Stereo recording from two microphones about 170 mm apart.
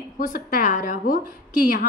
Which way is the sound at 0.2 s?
50° left (ahead or behind).